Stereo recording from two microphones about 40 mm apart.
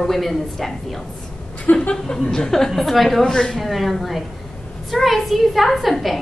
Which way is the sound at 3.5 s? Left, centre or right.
Centre.